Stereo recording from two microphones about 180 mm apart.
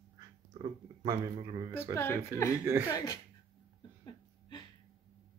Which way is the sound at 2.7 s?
10° right (ahead or behind).